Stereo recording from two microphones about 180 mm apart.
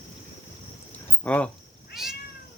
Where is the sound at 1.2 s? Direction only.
5° left (ahead or behind).